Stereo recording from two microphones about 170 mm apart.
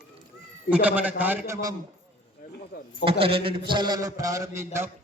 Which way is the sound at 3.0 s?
35° right (ahead or behind).